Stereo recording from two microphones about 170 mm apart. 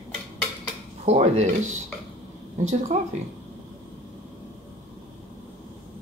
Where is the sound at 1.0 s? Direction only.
40° right (ahead or behind).